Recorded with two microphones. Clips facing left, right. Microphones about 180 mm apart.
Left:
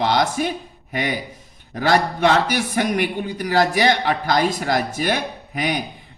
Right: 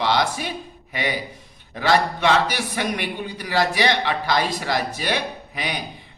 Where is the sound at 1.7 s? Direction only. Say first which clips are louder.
Left 1 dB; 50° left (ahead or behind).